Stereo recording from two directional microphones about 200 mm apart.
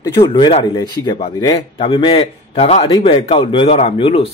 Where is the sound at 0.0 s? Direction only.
20° left (ahead or behind).